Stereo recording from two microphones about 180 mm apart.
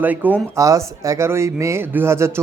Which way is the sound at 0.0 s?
10° right (ahead or behind).